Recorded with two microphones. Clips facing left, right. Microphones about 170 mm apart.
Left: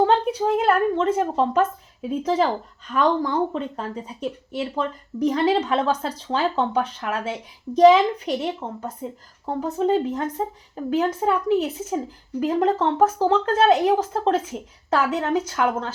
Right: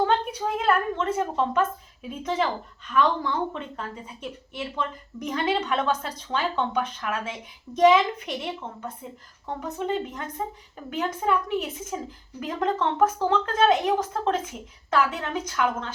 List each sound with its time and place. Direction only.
0.0 s a woman's voice: 30° left (ahead or behind)